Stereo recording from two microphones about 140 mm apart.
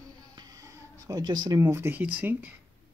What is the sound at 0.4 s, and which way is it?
Speech, 25° right (ahead or behind).